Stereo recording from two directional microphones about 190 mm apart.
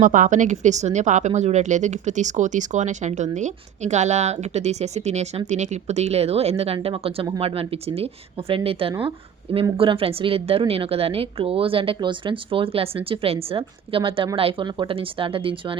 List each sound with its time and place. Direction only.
0.0 s speech: 45° right (ahead or behind); by 15.8 s 25° right (ahead or behind)